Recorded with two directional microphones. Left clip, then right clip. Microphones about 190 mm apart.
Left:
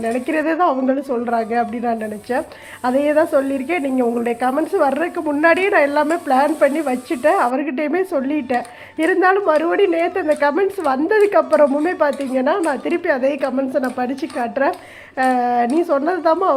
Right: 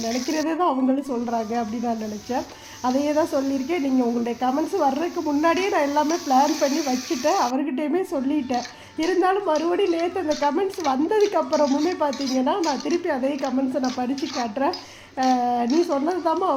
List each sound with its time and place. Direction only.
0.3 s speech: 10° left (ahead or behind)